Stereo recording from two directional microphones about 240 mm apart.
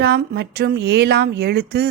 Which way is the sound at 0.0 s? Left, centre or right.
Right.